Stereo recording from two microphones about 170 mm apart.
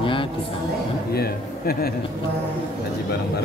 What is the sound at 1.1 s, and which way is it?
Speech, 65° left (ahead or behind).